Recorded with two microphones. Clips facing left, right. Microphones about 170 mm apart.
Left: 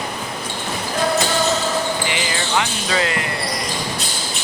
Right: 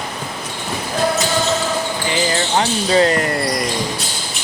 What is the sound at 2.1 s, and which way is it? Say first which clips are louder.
Basketball bounce: right 4 dB; 40° right (ahead or behind).